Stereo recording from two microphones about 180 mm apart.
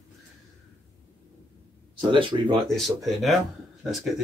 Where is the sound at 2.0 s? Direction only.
25° right (ahead or behind).